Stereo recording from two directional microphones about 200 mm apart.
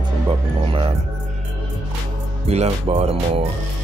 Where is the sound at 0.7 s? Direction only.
25° right (ahead or behind).